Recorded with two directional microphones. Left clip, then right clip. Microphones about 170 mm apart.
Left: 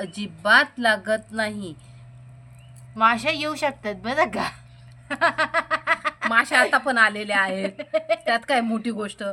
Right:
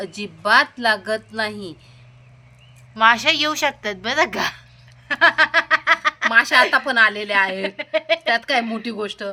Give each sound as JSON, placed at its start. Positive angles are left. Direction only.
{"t": 0.0, "sound": "a woman's voice", "side_deg": 25}
{"t": 2.9, "sound": "a woman's voice", "side_deg": 5}
{"t": 5.0, "sound": "a sound", "side_deg": 10}
{"t": 6.3, "sound": "a woman's voice", "side_deg": 30}
{"t": 7.6, "sound": "speech", "side_deg": 5}
{"t": 8.3, "sound": "a woman's voice", "side_deg": 40}